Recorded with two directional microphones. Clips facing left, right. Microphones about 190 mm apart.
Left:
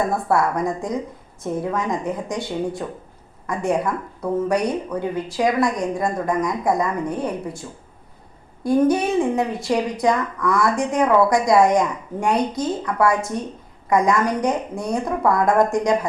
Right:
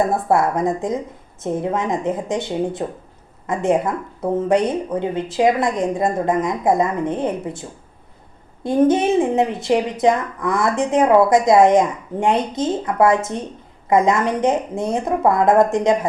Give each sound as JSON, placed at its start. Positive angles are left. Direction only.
{"t": 0.1, "sound": "a woman's voice", "side_deg": -25}
{"t": 8.6, "sound": "a woman's voice", "side_deg": -25}